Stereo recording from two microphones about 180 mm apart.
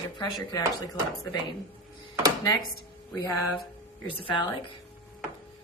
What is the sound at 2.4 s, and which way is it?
Speech, 20° left (ahead or behind).